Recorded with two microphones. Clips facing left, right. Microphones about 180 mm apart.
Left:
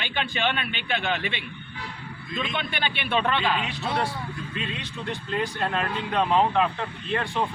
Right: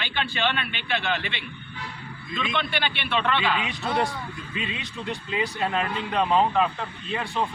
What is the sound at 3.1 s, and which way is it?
Speech, 40° left (ahead or behind).